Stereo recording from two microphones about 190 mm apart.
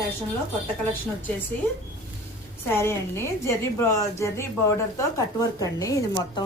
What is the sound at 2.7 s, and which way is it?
A woman's voice, 10° left (ahead or behind).